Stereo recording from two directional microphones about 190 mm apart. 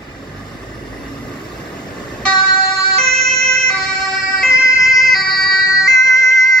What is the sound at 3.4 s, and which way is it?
Emergency vehicle, 35° right (ahead or behind).